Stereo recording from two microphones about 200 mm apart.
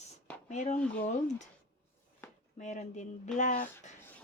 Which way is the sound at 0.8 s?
5° left (ahead or behind).